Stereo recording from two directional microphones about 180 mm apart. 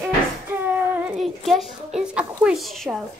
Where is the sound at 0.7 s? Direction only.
5° right (ahead or behind).